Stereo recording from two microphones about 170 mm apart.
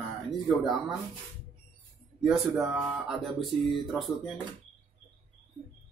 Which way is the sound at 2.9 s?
Centre (ahead or behind).